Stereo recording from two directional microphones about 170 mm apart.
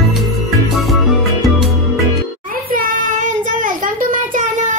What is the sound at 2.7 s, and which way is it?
Child singing, 55° right (ahead or behind).